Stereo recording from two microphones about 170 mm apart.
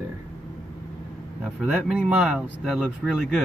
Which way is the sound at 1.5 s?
5° right (ahead or behind).